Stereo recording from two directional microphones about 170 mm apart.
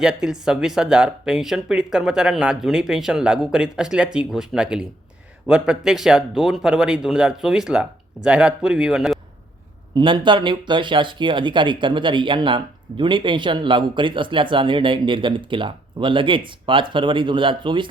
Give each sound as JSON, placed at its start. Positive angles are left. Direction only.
{"t": 0.0, "sound": "speech", "side_deg": -5}
{"t": 9.9, "sound": "speech", "side_deg": -30}